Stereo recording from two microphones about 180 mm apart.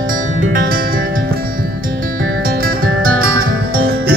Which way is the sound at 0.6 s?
55° right (ahead or behind).